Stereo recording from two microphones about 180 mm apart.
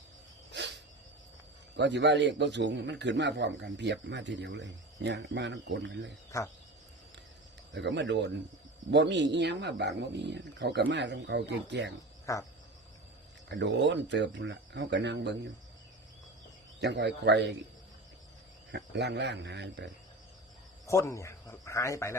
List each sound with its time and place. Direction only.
0.5 s dog: 75° right (ahead or behind)
1.7 s speech: 75° right (ahead or behind); by 6.1 s 90° right
7.7 s speech: 80° right
12.2 s frog: 15° left (ahead or behind)
13.5 s speech: 85° right
16.8 s speech: 75° right (ahead or behind)
18.7 s speech: 75° right (ahead or behind)
20.8 s a man's voice: 15° left (ahead or behind)